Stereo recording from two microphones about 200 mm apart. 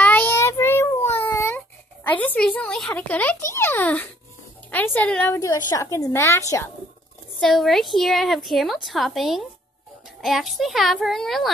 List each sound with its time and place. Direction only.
0.0 s child singing: 10° left (ahead or behind)
1.1 s a sound: 10° left (ahead or behind)
2.0 s a child's voice: 10° left (ahead or behind)
7.3 s a woman's voice: centre (ahead or behind)